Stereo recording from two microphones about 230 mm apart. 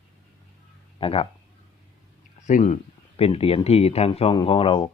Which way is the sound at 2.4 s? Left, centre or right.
Left.